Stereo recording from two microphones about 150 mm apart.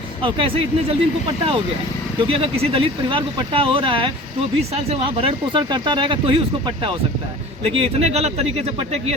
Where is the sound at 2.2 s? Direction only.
40° right (ahead or behind).